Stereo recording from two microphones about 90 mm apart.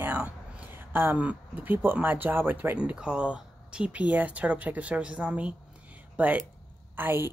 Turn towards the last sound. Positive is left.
turn(degrees=-25)  # may be behind; listen again after turning